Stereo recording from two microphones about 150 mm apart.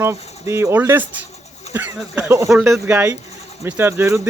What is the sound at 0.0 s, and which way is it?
Speech, 15° right (ahead or behind).